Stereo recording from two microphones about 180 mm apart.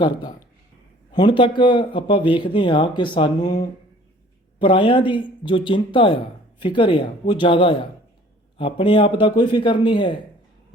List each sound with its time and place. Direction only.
1.1 s speech: 25° left (ahead or behind)